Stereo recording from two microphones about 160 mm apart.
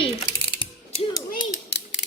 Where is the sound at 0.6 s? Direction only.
30° left (ahead or behind).